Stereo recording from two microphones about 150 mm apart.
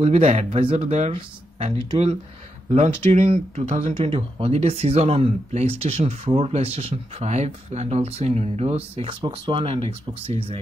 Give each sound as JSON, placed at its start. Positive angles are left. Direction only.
{"t": 0.0, "sound": "speech", "side_deg": -45}
{"t": 0.8, "sound": "speech", "side_deg": -50}
{"t": 2.7, "sound": "speech", "side_deg": -45}